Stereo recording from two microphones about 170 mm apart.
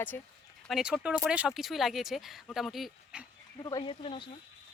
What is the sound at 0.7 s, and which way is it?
Speech, 5° right (ahead or behind).